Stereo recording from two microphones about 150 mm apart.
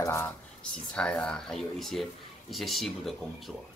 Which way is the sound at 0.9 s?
5° left (ahead or behind).